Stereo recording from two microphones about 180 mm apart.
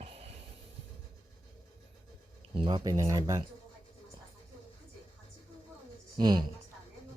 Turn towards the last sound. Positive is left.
turn(degrees=-25)  # may be behind; listen again after turning